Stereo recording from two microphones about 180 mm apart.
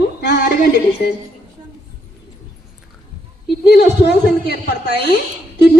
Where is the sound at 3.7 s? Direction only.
65° left (ahead or behind).